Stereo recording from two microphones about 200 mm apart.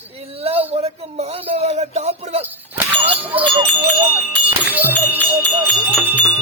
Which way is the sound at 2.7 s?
10° right (ahead or behind).